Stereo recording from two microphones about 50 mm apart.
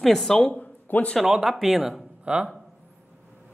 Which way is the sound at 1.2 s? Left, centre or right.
Centre.